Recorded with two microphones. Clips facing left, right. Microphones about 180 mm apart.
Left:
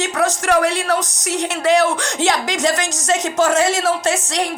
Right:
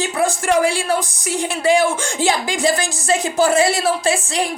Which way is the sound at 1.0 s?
5° right (ahead or behind).